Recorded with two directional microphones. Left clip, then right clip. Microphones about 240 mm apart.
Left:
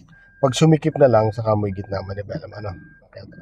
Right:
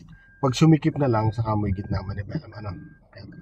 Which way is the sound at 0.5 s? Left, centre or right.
Left.